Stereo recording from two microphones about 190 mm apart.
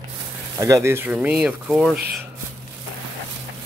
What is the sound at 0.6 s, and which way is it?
Speech, 15° right (ahead or behind).